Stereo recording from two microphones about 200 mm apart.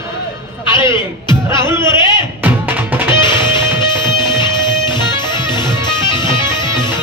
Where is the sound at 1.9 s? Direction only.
25° left (ahead or behind).